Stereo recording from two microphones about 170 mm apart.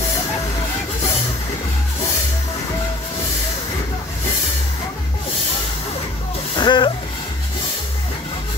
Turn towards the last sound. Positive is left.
turn(degrees=25)  # may be behind; listen again after turning